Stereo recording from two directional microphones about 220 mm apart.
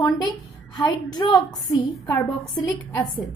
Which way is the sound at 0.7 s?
20° left (ahead or behind).